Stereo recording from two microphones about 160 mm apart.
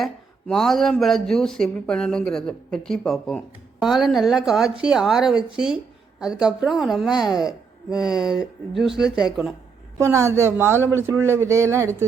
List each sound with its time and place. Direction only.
0.0 s speech: 5° left (ahead or behind)
10.0 s speech: 20° right (ahead or behind)